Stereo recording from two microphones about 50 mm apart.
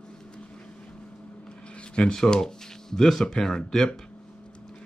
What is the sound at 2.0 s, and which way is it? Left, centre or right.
Speech, centre.